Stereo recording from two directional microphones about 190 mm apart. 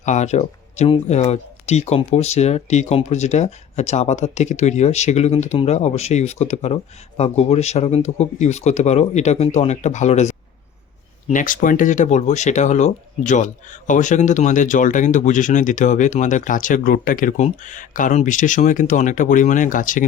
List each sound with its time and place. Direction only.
0.0 s speech: 40° left (ahead or behind)